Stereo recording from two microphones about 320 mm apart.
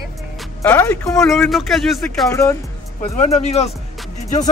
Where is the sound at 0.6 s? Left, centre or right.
Centre.